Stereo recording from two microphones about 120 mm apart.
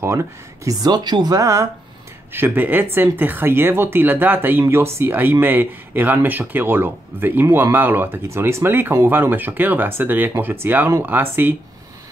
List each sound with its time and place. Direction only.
0.0 s speech: 25° right (ahead or behind)
2.3 s speech: 15° right (ahead or behind)